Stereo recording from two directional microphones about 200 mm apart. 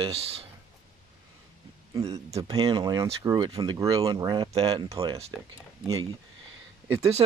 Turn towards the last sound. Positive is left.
turn(degrees=-30)  # may be behind; listen again after turning